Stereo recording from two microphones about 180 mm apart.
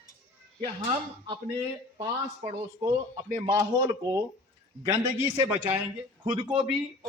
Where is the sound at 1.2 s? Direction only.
25° right (ahead or behind).